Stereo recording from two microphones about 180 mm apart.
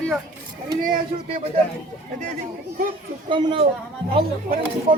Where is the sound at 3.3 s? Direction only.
25° right (ahead or behind).